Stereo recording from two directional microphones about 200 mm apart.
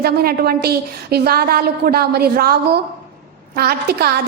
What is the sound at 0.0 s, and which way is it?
A woman's voice, 50° right (ahead or behind).